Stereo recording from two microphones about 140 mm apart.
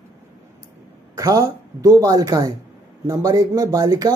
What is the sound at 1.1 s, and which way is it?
Speech, 25° right (ahead or behind).